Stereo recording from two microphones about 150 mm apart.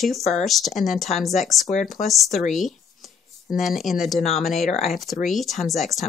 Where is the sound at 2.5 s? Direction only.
Centre (ahead or behind).